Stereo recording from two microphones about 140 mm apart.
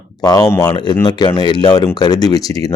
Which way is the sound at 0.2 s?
25° left (ahead or behind).